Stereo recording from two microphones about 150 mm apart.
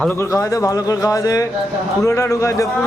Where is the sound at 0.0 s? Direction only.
15° left (ahead or behind).